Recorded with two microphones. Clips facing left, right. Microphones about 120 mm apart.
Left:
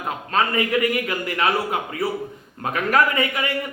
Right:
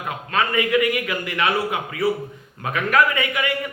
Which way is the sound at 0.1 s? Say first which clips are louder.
Left 1 dB; 35° left (ahead or behind).